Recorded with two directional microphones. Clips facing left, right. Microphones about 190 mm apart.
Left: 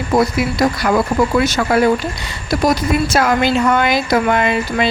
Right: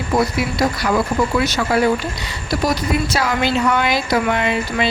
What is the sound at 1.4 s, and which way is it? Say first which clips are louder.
Speech: left 3 dB; 45° left (ahead or behind).